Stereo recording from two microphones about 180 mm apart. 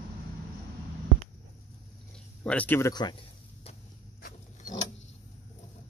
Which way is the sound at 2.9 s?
25° left (ahead or behind).